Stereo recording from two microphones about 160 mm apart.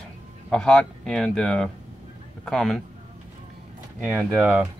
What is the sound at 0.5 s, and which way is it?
Speech, 5° left (ahead or behind).